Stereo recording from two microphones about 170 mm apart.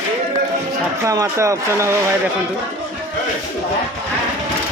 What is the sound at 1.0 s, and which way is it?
Speech, 20° right (ahead or behind).